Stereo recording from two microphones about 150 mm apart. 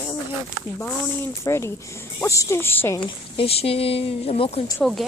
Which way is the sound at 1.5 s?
20° left (ahead or behind).